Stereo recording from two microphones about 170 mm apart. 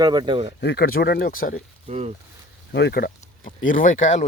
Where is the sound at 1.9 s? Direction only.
40° right (ahead or behind).